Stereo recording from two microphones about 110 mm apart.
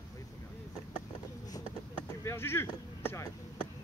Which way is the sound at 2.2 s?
20° left (ahead or behind).